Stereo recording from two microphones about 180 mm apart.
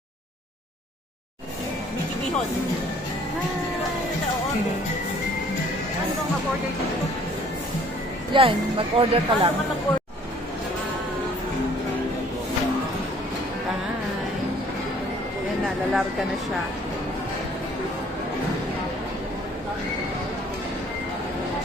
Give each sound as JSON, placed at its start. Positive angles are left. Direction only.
{"t": 8.3, "sound": "a woman's voice", "side_deg": -30}
{"t": 15.6, "sound": "speech", "side_deg": 0}